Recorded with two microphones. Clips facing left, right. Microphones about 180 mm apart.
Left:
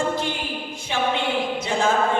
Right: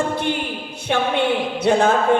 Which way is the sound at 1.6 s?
65° right (ahead or behind).